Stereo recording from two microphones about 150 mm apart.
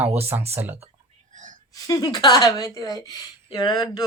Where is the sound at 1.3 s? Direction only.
60° right (ahead or behind).